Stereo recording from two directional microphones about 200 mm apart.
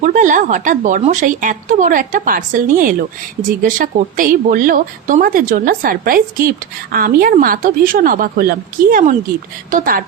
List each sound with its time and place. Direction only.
0.0 s speech: 40° right (ahead or behind)